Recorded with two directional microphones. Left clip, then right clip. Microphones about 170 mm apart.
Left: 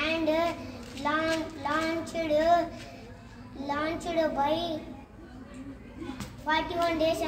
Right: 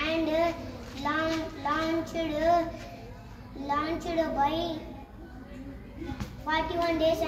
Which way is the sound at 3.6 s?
15° left (ahead or behind).